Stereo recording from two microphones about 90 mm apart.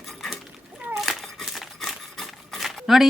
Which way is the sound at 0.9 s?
Centre (ahead or behind).